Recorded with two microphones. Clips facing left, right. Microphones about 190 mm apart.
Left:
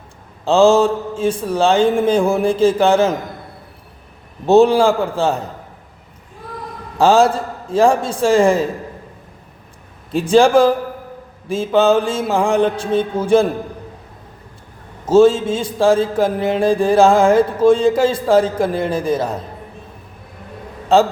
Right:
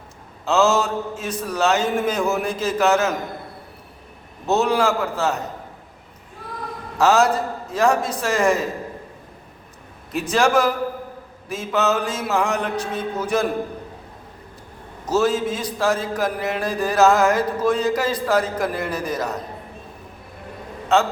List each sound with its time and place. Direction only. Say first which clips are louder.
0.4 s mantra: left 7 dB; 30° left (ahead or behind)
4.4 s a man's voice: left 8 dB; 30° left (ahead or behind)
7.0 s mantra: left 4 dB; 30° left (ahead or behind)
10.1 s mantra: left 7 dB; 30° left (ahead or behind)
15.0 s mantra: left 9 dB; 30° left (ahead or behind)
20.9 s a man's voice: left 6 dB; 35° left (ahead or behind)